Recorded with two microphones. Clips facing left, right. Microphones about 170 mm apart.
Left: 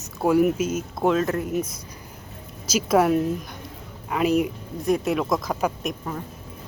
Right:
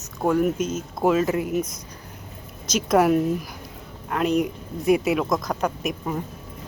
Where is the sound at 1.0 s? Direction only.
5° right (ahead or behind).